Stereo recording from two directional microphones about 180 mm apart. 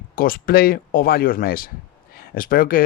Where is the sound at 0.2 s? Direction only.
55° left (ahead or behind).